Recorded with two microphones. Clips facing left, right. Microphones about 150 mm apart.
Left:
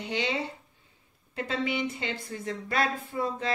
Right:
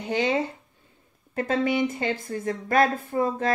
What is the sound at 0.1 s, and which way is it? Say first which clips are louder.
Speech: right 7 dB; 45° right (ahead or behind).